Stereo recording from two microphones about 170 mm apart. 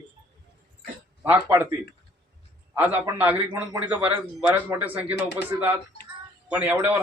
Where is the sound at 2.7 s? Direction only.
10° right (ahead or behind).